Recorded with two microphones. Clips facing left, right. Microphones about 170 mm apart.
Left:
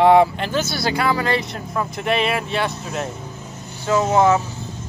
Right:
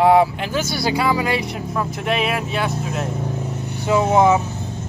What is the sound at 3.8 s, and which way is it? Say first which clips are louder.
Speech: right 1 dB; 15° right (ahead or behind).